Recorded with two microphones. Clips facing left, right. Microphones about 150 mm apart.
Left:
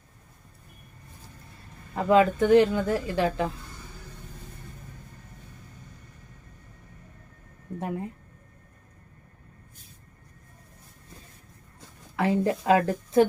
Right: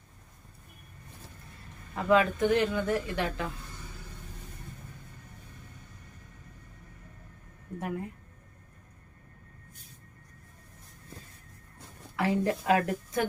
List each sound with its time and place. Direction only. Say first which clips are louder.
2.0 s a woman's voice: left 4 dB; 30° left (ahead or behind)
7.8 s speech: left 3 dB; 25° left (ahead or behind)
12.1 s a woman's voice: left 3 dB; 25° left (ahead or behind)